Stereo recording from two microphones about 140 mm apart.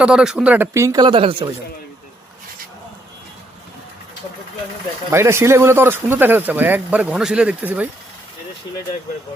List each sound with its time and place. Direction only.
0.0 s speech: 5° right (ahead or behind); by 1.0 s 20° right (ahead or behind)
1.0 s speech: 40° right (ahead or behind)
5.1 s speech: 20° right (ahead or behind)